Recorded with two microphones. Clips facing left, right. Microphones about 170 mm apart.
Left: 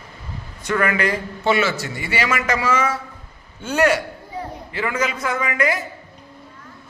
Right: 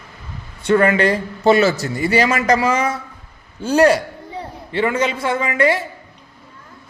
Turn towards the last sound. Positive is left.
turn(degrees=-30)  # may be behind; listen again after turning